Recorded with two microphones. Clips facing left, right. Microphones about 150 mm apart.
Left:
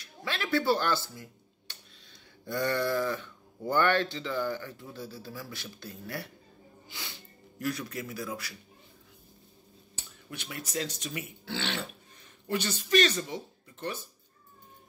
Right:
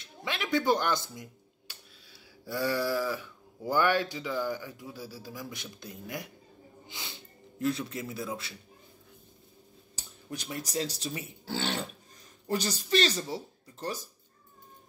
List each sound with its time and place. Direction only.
0.0 s speech: 20° right (ahead or behind)
1.7 s a sound: 10° right (ahead or behind)
2.4 s speech: 5° right (ahead or behind); by 8.5 s 25° right (ahead or behind)
9.9 s speech: 40° right (ahead or behind)